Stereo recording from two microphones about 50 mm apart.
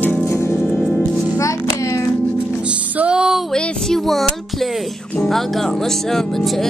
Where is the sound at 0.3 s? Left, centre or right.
Left.